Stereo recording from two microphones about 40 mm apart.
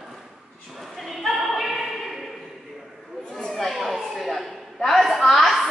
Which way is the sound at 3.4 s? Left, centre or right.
Centre.